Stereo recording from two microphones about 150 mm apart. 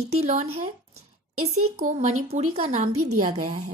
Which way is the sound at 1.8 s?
55° right (ahead or behind).